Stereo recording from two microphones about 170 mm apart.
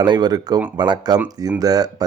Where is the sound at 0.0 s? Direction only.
25° right (ahead or behind).